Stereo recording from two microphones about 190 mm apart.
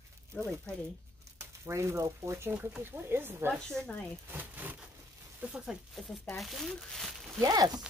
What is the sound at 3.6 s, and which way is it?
Speech, 5° left (ahead or behind).